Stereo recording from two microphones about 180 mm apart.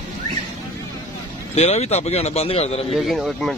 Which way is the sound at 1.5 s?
40° left (ahead or behind).